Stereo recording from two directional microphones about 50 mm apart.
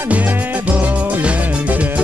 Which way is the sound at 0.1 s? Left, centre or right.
Right.